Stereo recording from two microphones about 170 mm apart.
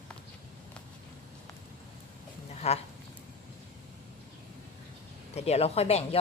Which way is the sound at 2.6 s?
35° left (ahead or behind).